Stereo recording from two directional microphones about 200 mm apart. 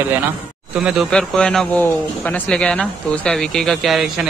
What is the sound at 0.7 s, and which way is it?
Speech, 5° right (ahead or behind).